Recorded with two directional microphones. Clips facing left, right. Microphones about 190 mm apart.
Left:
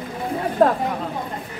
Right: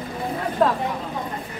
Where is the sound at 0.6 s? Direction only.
40° left (ahead or behind).